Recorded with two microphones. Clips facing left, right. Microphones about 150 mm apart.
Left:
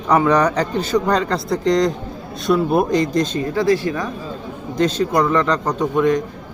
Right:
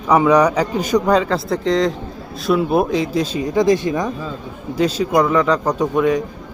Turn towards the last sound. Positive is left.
turn(degrees=-10)  # may be behind; listen again after turning